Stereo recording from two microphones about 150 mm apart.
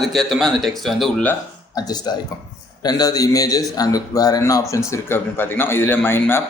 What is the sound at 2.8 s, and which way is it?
Speech, 25° left (ahead or behind).